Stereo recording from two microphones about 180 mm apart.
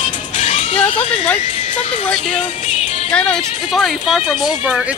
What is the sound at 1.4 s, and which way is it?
Music, 40° left (ahead or behind).